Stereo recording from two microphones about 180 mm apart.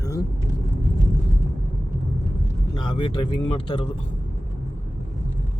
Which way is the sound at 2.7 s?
25° left (ahead or behind).